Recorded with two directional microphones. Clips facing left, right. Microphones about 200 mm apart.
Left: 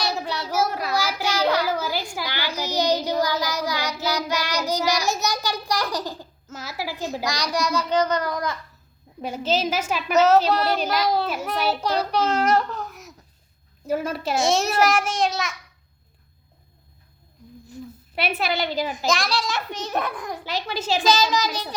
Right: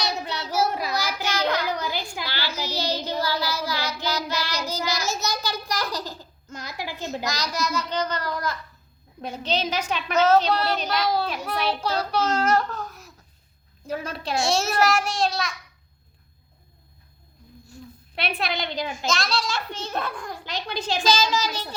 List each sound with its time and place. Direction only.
0.7 s child singing: centre (ahead or behind)
1.2 s a sound: 10° left (ahead or behind)
2.2 s a sound: 15° left (ahead or behind)
2.6 s child singing: 15° left (ahead or behind)
7.3 s a child's voice: 15° left (ahead or behind)
13.8 s a child's voice: 5° left (ahead or behind)
14.4 s a child's voice: 15° left (ahead or behind)
18.1 s a child's voice: 5° left (ahead or behind)
18.9 s a child's voice: 15° left (ahead or behind)
20.4 s a child's voice: 5° left (ahead or behind)